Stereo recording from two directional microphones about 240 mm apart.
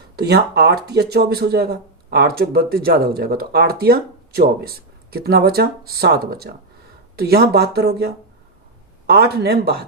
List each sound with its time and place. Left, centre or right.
0.2 s speech: right